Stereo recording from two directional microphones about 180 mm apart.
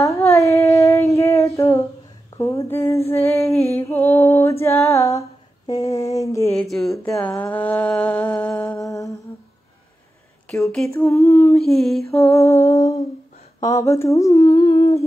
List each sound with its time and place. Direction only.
0.0 s a sound: 15° left (ahead or behind)
3.1 s speech: 15° left (ahead or behind)
3.7 s female singing: 15° left (ahead or behind)
5.7 s mantra: 15° left (ahead or behind)
6.7 s a sound: centre (ahead or behind)
7.2 s mantra: 10° left (ahead or behind)
11.0 s female singing: 15° left (ahead or behind)
11.5 s a sound: centre (ahead or behind)
12.3 s speech: 15° left (ahead or behind)